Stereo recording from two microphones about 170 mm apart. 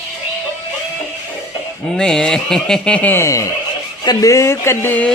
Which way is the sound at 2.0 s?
5° left (ahead or behind).